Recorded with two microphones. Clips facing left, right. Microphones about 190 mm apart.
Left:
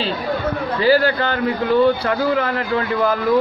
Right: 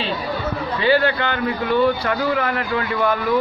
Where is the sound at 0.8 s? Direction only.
35° left (ahead or behind).